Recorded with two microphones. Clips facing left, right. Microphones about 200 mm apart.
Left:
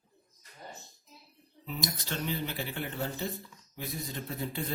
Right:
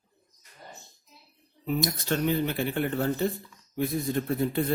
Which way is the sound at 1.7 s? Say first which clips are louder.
Right 9 dB; 55° right (ahead or behind).